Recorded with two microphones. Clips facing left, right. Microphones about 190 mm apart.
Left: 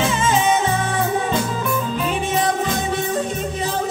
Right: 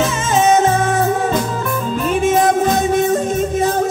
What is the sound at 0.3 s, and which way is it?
Music, 45° right (ahead or behind).